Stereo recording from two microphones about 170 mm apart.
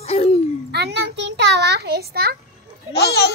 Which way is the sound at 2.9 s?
75° left (ahead or behind).